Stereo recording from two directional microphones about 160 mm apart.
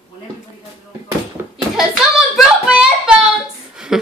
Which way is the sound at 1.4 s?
15° right (ahead or behind).